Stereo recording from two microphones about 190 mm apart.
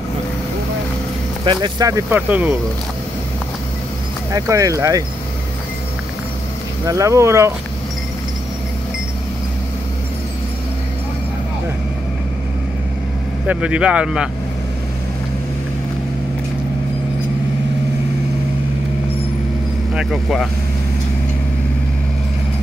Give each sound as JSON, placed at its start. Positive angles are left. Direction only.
{"t": 1.4, "sound": "speech", "side_deg": -25}
{"t": 4.3, "sound": "speech", "side_deg": -15}
{"t": 6.9, "sound": "speech", "side_deg": -15}
{"t": 13.5, "sound": "speech", "side_deg": -5}
{"t": 19.9, "sound": "speech", "side_deg": -5}